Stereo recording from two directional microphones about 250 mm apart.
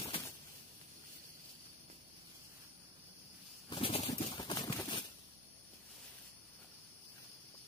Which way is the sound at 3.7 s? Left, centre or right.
Left.